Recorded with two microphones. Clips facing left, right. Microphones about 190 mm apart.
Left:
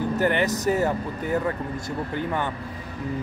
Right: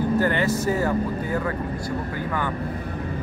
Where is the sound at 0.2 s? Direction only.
20° left (ahead or behind).